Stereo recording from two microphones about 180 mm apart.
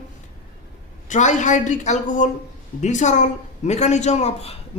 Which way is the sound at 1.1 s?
45° left (ahead or behind).